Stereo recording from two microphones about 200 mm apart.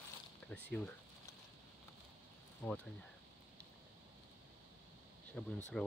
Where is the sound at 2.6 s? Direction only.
5° left (ahead or behind).